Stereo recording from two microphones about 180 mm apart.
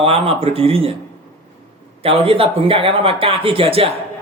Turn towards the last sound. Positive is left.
turn(degrees=-30)  # may be behind; listen again after turning